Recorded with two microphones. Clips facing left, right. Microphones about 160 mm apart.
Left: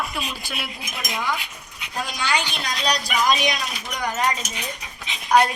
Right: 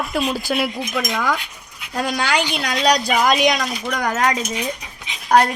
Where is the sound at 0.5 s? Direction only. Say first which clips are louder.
Right 14 dB; 70° right (ahead or behind).